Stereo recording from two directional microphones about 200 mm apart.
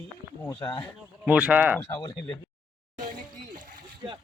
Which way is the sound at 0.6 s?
25° left (ahead or behind).